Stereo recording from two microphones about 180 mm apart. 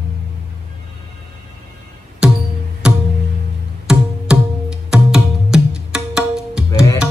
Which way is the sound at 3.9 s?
5° right (ahead or behind).